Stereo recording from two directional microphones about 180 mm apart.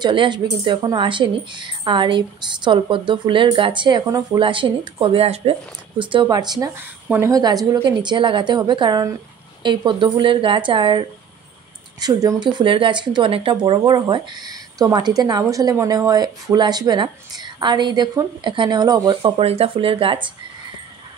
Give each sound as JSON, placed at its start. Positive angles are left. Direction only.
{"t": 0.0, "sound": "speech", "side_deg": -25}